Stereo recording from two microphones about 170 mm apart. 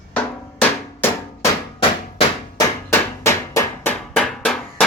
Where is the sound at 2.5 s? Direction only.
15° left (ahead or behind).